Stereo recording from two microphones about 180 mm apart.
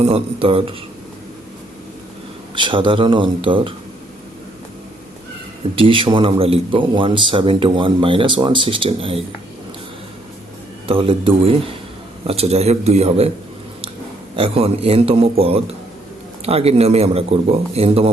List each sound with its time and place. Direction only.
0.0 s speech: 30° right (ahead or behind)
2.6 s a man's voice: 25° right (ahead or behind)
5.7 s a man's voice: 30° right (ahead or behind)
10.8 s speech: 30° right (ahead or behind)
14.3 s speech: 30° right (ahead or behind)